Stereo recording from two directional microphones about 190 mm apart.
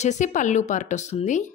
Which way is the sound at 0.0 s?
40° left (ahead or behind).